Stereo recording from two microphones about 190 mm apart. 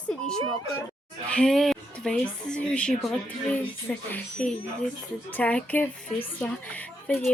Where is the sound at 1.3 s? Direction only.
5° left (ahead or behind).